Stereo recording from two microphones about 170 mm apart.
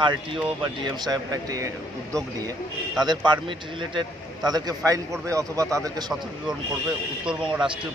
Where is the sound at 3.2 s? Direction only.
30° right (ahead or behind).